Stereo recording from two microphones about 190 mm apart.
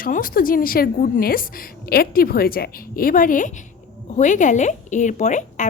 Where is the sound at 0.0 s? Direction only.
45° left (ahead or behind).